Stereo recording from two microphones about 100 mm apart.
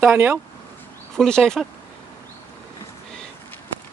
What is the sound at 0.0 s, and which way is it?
Speech, 20° right (ahead or behind).